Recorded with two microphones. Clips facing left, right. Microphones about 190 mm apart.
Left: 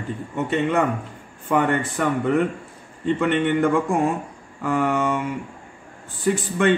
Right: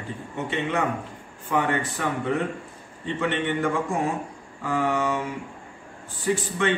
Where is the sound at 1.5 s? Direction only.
55° left (ahead or behind).